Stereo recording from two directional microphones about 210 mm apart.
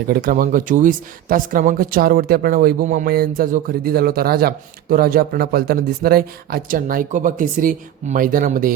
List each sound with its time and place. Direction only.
0.1 s speech: 40° right (ahead or behind)